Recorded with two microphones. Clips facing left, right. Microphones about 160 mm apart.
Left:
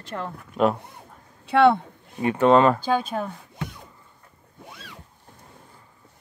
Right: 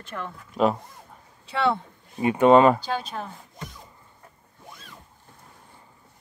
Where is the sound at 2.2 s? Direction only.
10° right (ahead or behind).